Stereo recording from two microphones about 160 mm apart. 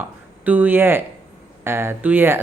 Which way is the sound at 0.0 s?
10° right (ahead or behind).